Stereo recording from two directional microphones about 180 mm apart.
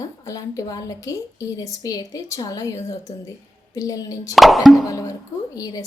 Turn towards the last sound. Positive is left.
turn(degrees=20)  # may be behind; listen again after turning